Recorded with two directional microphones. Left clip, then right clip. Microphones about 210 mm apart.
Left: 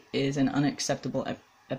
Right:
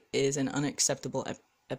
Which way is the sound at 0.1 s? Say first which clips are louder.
Left 1 dB; 50° right (ahead or behind).